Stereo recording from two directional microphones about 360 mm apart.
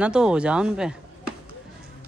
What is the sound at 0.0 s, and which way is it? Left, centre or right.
Speech, centre.